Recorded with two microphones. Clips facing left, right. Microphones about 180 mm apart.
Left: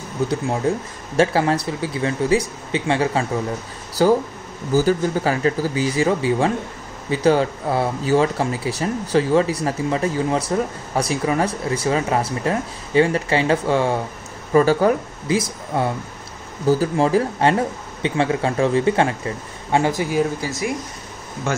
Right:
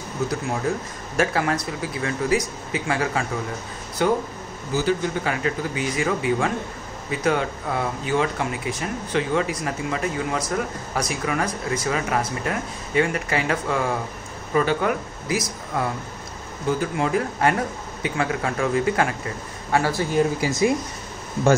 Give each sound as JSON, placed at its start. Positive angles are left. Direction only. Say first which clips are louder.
{"t": 0.3, "sound": "speech", "louder": "left 5 dB", "side_deg": 30}
{"t": 20.3, "sound": "speech", "louder": "right 4 dB", "side_deg": -20}